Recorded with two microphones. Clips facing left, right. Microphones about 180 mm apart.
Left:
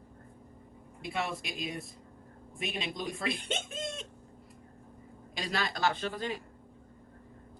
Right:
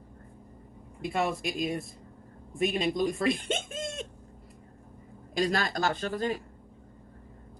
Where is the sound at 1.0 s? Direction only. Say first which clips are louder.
Right 6 dB; 45° right (ahead or behind).